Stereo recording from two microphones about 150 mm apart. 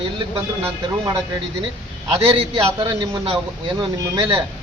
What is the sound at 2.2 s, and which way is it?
Speech, 35° right (ahead or behind).